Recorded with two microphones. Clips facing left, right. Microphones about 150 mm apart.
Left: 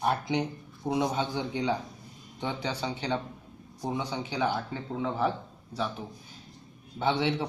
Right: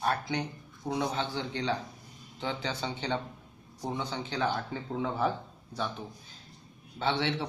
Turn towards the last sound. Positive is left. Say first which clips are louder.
# left 3 dB
turn(degrees=10)  # may be behind; listen again after turning